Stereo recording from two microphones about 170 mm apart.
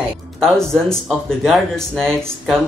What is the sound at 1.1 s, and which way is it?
Speech, centre (ahead or behind).